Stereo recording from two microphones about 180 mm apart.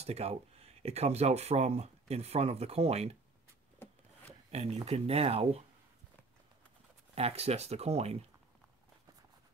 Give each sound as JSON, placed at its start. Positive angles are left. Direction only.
{"t": 0.0, "sound": "speech", "side_deg": -35}
{"t": 3.8, "sound": "a sound", "side_deg": 15}
{"t": 4.5, "sound": "speech", "side_deg": -35}
{"t": 7.2, "sound": "speech", "side_deg": -35}